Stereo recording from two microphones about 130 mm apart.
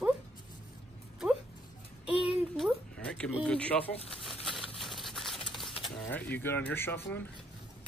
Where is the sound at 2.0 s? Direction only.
10° right (ahead or behind).